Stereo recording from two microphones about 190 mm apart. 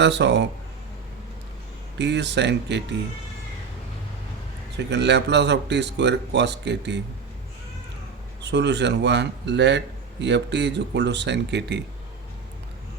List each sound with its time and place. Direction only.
0.0 s a man's voice: 65° right (ahead or behind)
2.0 s speech: 65° right (ahead or behind)
4.9 s a man's voice: 65° right (ahead or behind)
8.4 s a man's voice: 65° right (ahead or behind)